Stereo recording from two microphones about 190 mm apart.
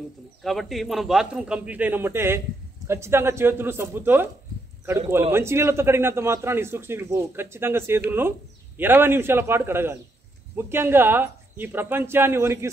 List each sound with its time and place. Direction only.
0.4 s a man's voice: centre (ahead or behind)
5.3 s a man's voice: 15° right (ahead or behind)